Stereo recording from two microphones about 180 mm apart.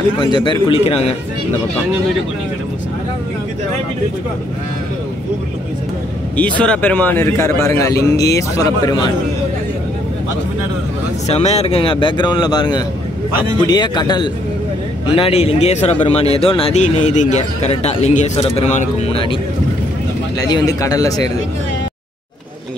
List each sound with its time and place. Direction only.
0.2 s speech: 25° left (ahead or behind)
6.6 s a man's voice: 5° left (ahead or behind); by 9.1 s 25° left (ahead or behind)
11.2 s speech: 35° left (ahead or behind)
20.3 s speech: 20° left (ahead or behind)